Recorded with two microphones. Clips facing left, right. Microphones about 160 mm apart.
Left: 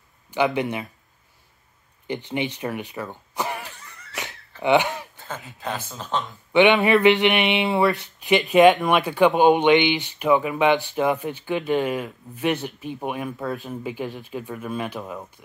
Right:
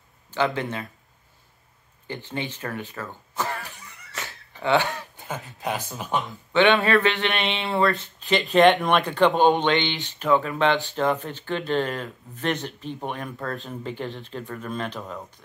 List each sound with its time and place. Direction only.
0.3 s speech: 15° left (ahead or behind)
2.0 s speech: 15° left (ahead or behind)
4.1 s a sound: 15° left (ahead or behind)
5.1 s a sound: 15° right (ahead or behind)
5.6 s speech: 15° right (ahead or behind)
6.5 s speech: 15° left (ahead or behind)